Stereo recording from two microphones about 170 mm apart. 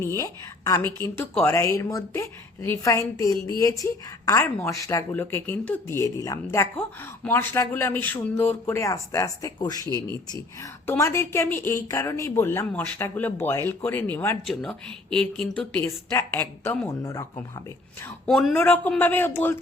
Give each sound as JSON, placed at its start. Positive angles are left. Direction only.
{"t": 0.0, "sound": "a woman's voice", "side_deg": 15}
{"t": 16.8, "sound": "speech", "side_deg": 20}
{"t": 18.3, "sound": "a woman's voice", "side_deg": 5}